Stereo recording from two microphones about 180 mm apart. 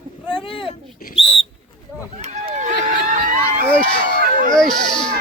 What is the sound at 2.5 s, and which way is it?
Run, 45° right (ahead or behind).